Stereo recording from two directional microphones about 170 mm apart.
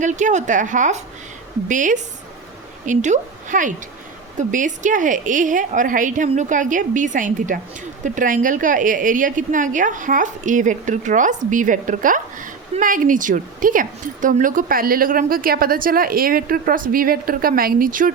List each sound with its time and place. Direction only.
0.0 s a woman's voice: 45° right (ahead or behind)